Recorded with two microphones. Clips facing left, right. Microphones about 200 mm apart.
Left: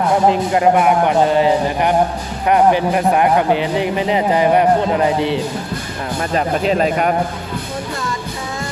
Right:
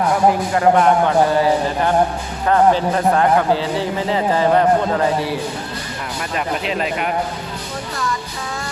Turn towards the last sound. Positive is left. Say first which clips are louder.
# left 6 dB
turn(degrees=40)  # may be behind; listen again after turning